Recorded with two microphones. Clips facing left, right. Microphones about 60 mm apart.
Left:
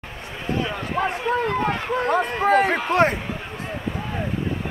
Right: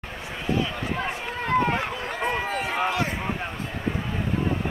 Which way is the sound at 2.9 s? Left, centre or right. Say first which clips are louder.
Left 8 dB; left.